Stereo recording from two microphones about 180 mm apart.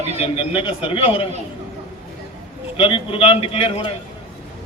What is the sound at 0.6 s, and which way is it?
Speech, 30° left (ahead or behind).